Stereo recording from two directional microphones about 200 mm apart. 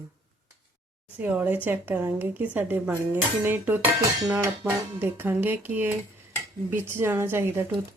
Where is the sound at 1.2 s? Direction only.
10° right (ahead or behind).